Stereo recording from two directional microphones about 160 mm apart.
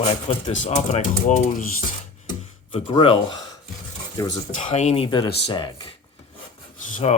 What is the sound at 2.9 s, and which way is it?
Speech, 35° left (ahead or behind).